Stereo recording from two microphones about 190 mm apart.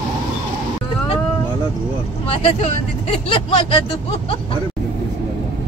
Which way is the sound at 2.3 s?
30° left (ahead or behind).